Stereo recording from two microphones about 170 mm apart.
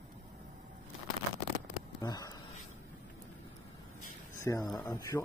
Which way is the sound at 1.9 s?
20° left (ahead or behind).